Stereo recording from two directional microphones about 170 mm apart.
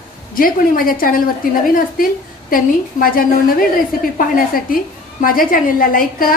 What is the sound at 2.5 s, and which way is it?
A woman's voice, 55° left (ahead or behind).